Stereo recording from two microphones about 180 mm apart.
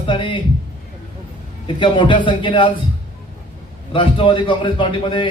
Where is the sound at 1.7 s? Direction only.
25° left (ahead or behind).